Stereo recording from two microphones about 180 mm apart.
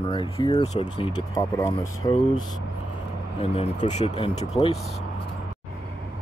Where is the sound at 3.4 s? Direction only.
35° left (ahead or behind).